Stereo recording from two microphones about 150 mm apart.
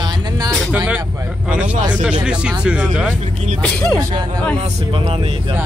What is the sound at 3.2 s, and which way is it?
Speech, 50° right (ahead or behind).